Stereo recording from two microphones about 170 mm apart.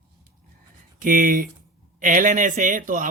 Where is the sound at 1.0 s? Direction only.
55° right (ahead or behind).